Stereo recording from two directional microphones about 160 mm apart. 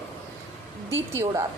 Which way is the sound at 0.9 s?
15° right (ahead or behind).